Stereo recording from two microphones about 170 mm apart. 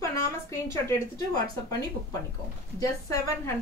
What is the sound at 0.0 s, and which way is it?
A woman's voice, 15° left (ahead or behind).